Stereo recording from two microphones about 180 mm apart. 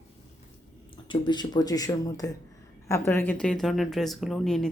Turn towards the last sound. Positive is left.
turn(degrees=0)  # may be behind; listen again after turning